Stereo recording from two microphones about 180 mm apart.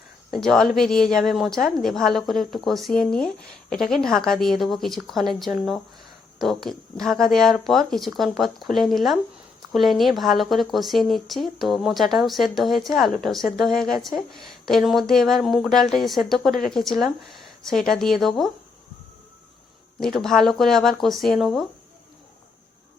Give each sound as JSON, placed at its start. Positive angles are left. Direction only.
{"t": 0.4, "sound": "a woman's voice", "side_deg": 5}
{"t": 16.5, "sound": "speech", "side_deg": 50}
{"t": 16.7, "sound": "a woman's voice", "side_deg": 0}
{"t": 20.0, "sound": "a woman's voice", "side_deg": 0}